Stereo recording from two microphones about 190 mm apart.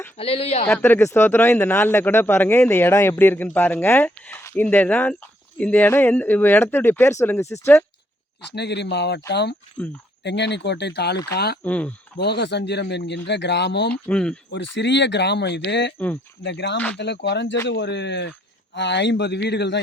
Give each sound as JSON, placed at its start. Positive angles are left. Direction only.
{"t": 0.2, "sound": "speech", "side_deg": 30}
{"t": 0.8, "sound": "speech", "side_deg": 15}
{"t": 8.5, "sound": "speech", "side_deg": 65}
{"t": 9.8, "sound": "speech", "side_deg": 5}
{"t": 10.2, "sound": "speech", "side_deg": 65}
{"t": 11.6, "sound": "speech", "side_deg": 10}
{"t": 12.1, "sound": "speech", "side_deg": 65}
{"t": 14.1, "sound": "speech", "side_deg": 5}
{"t": 14.8, "sound": "speech", "side_deg": 65}